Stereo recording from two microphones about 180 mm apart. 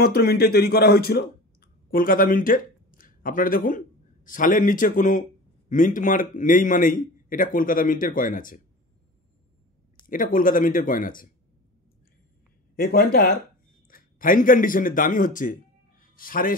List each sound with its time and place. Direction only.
0.0 s a man's voice: 60° left (ahead or behind)
10.0 s a man's voice: 50° left (ahead or behind)
12.7 s a man's voice: 60° left (ahead or behind)